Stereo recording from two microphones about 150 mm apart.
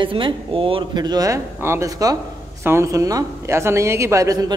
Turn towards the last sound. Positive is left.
turn(degrees=-25)  # may be behind; listen again after turning